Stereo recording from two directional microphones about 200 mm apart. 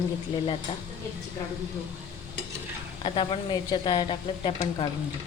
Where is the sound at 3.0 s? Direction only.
25° left (ahead or behind).